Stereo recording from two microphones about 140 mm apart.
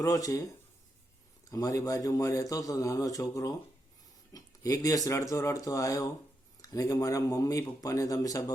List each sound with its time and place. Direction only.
0.0 s a man's voice: 25° left (ahead or behind)
1.5 s a man's voice: 25° left (ahead or behind)